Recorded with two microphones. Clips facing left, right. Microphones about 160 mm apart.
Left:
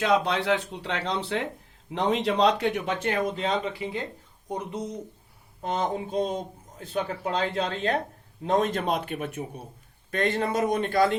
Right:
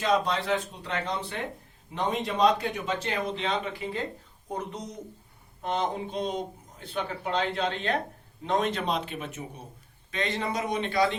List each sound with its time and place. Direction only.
0.0 s speech: 70° left (ahead or behind)
3.3 s speech: 35° left (ahead or behind)
5.6 s a man's voice: 40° left (ahead or behind)